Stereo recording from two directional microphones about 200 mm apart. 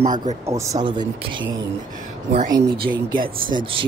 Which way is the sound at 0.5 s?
15° right (ahead or behind).